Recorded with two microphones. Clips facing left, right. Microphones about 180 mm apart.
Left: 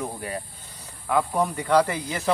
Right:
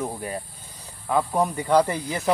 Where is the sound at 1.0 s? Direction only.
20° right (ahead or behind).